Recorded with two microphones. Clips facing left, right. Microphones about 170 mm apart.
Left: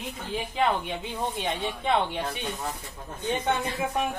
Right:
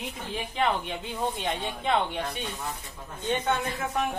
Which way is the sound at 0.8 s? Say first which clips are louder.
Even; centre (ahead or behind).